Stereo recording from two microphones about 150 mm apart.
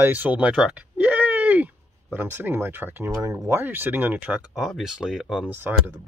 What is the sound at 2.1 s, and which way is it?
Speech, 15° right (ahead or behind).